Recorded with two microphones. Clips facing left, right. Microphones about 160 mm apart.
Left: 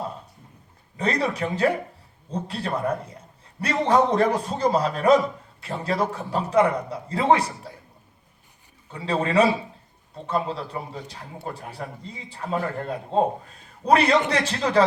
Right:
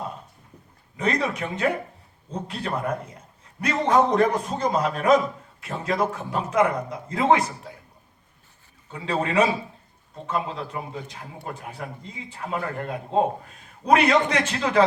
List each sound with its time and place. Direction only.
0.9 s a man's voice: 35° left (ahead or behind)
8.9 s a man's voice: 35° left (ahead or behind)
12.3 s a man's voice: 35° left (ahead or behind)